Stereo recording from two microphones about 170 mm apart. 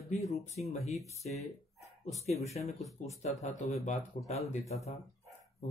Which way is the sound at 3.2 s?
45° left (ahead or behind).